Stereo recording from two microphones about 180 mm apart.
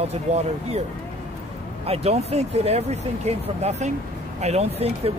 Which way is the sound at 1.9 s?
35° right (ahead or behind).